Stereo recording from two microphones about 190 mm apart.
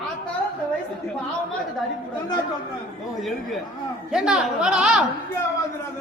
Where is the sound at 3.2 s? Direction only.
Centre (ahead or behind).